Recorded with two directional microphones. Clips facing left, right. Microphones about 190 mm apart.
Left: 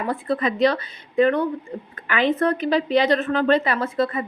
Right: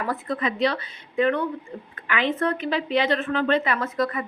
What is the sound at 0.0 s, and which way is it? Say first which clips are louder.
A woman's voice: left 3 dB; 30° left (ahead or behind).